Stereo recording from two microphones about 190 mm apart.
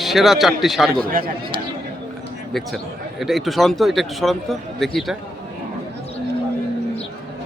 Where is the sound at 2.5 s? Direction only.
Centre (ahead or behind).